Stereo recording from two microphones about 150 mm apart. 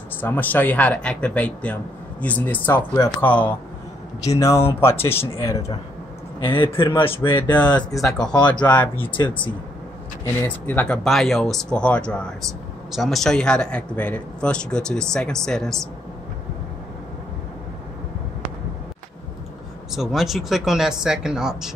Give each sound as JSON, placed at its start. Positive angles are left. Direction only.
{"t": 0.2, "sound": "speech", "side_deg": 10}
{"t": 6.4, "sound": "a man's voice", "side_deg": 35}
{"t": 7.5, "sound": "speech", "side_deg": 10}
{"t": 8.4, "sound": "a man's voice", "side_deg": 30}
{"t": 10.2, "sound": "speech", "side_deg": 10}
{"t": 11.1, "sound": "a man's voice", "side_deg": 0}
{"t": 19.9, "sound": "a man's voice", "side_deg": 0}